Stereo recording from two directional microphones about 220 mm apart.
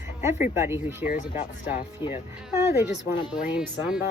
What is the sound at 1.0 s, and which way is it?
Speech, 35° left (ahead or behind).